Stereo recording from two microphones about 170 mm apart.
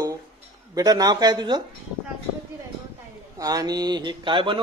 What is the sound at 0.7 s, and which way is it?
Speech, 20° right (ahead or behind).